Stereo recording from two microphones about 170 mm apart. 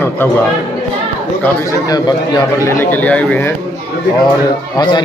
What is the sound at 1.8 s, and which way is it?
Speech, 25° left (ahead or behind).